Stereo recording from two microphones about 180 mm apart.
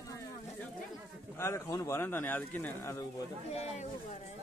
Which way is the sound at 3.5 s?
35° left (ahead or behind).